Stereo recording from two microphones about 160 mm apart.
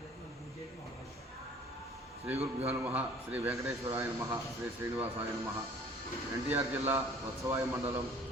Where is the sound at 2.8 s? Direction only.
10° right (ahead or behind).